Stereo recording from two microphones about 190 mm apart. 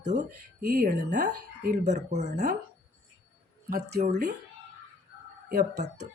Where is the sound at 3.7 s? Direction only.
55° right (ahead or behind).